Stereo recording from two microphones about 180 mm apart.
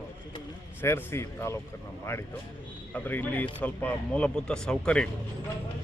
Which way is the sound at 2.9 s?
10° left (ahead or behind).